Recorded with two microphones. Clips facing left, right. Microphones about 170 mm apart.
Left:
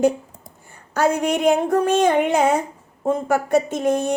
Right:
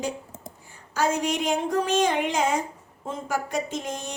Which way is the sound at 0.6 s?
60° left (ahead or behind).